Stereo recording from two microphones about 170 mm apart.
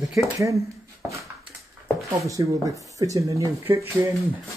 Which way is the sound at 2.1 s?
20° right (ahead or behind).